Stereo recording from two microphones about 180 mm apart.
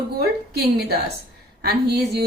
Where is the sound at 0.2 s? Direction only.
60° right (ahead or behind).